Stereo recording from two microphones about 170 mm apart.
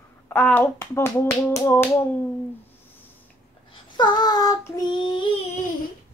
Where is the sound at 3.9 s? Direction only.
25° left (ahead or behind).